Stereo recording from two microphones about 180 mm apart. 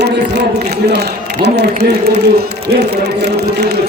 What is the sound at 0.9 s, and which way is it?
A man's voice, 70° right (ahead or behind).